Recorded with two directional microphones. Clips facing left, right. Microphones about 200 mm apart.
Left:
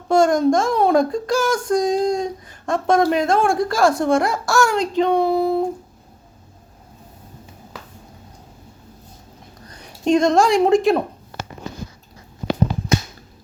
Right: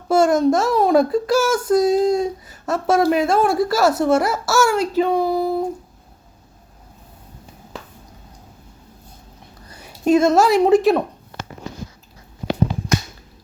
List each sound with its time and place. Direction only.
0.1 s a child's voice: 5° right (ahead or behind)
9.7 s speech: 5° right (ahead or behind)